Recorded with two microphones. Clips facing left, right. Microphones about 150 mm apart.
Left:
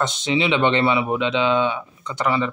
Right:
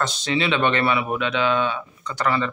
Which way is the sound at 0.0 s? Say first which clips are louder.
Left 2 dB; 20° left (ahead or behind).